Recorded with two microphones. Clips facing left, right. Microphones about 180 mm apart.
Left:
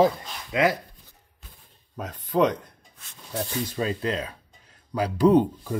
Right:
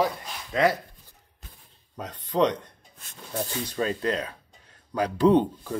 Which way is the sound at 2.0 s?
10° left (ahead or behind).